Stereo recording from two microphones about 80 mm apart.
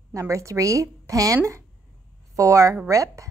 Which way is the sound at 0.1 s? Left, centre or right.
Right.